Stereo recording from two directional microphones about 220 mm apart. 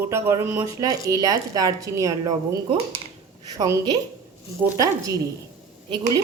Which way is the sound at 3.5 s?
15° right (ahead or behind).